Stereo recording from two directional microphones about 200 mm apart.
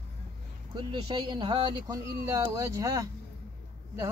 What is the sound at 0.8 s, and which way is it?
Speech, 25° right (ahead or behind).